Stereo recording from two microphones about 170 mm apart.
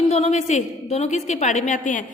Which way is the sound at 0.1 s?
40° left (ahead or behind).